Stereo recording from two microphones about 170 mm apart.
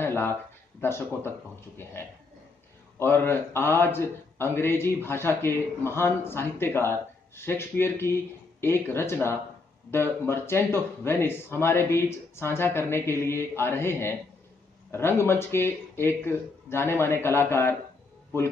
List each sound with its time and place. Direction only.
0.0 s speech: 15° left (ahead or behind)
3.0 s speech: 15° left (ahead or behind)